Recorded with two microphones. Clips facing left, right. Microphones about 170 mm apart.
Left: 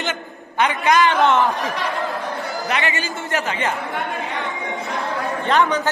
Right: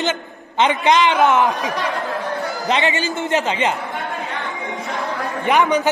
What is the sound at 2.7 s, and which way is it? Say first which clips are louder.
A man's voice: right 6 dB; 25° right (ahead or behind).